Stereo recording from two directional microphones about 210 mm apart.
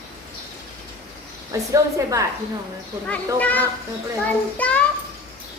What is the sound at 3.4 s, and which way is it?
Speech, 5° left (ahead or behind).